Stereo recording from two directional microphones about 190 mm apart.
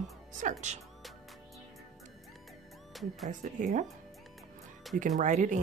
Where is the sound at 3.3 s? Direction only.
40° right (ahead or behind).